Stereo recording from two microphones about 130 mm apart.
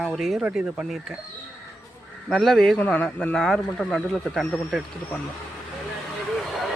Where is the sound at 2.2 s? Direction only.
Centre (ahead or behind).